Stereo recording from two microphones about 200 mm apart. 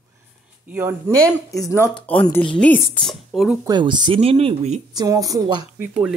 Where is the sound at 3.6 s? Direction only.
20° right (ahead or behind).